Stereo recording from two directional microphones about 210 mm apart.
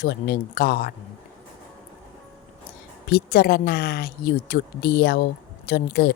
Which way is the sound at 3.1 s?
45° left (ahead or behind).